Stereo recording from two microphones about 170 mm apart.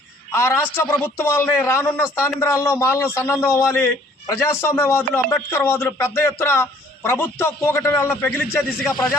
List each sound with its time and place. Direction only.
0.3 s speech: 15° left (ahead or behind)